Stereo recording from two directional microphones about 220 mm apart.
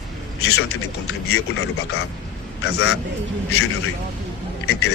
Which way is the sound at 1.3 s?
75° left (ahead or behind).